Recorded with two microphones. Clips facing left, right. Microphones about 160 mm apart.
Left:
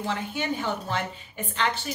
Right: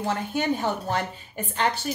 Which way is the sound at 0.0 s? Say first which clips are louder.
Right 4 dB; 45° right (ahead or behind).